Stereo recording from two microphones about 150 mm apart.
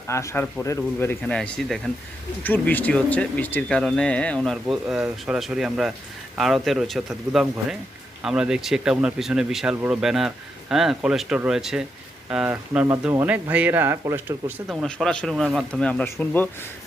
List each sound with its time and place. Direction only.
0.1 s speech: 20° left (ahead or behind); by 14.5 s 15° right (ahead or behind)
14.7 s speech: 5° left (ahead or behind)